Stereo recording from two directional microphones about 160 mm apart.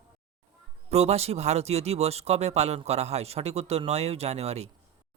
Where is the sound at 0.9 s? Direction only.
40° right (ahead or behind).